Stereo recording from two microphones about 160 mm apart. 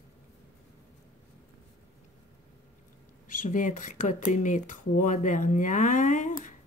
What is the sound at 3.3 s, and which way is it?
Speech, 55° left (ahead or behind).